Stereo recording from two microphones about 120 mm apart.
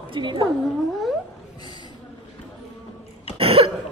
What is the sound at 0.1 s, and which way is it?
Speech, 40° right (ahead or behind).